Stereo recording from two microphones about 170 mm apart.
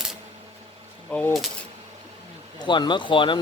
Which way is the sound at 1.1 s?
5° left (ahead or behind).